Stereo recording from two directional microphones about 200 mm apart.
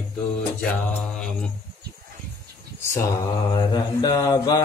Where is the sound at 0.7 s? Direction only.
5° left (ahead or behind).